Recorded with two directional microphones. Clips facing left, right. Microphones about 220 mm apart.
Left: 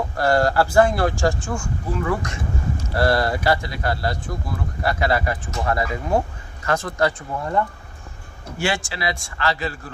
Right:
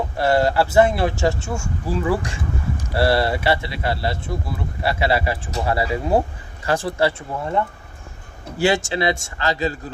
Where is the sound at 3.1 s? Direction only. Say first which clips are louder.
Right 1 dB; 25° right (ahead or behind).